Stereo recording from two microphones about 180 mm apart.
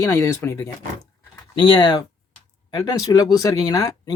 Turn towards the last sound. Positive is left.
turn(degrees=20)  # may be behind; listen again after turning